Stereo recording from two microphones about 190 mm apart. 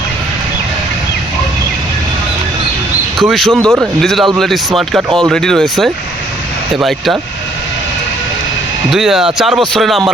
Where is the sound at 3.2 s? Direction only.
Centre (ahead or behind).